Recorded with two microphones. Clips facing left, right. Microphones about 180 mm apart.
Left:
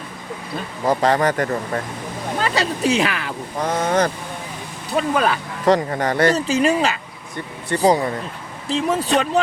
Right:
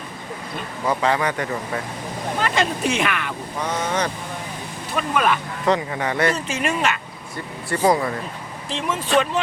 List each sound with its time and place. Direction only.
0.9 s speech: 45° left (ahead or behind)
3.6 s speech: 55° left (ahead or behind)
4.9 s speech: 35° left (ahead or behind)